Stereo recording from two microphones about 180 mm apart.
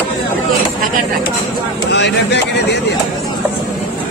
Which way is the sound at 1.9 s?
75° left (ahead or behind).